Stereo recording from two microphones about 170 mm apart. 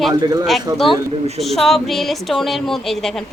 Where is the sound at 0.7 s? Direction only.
20° right (ahead or behind).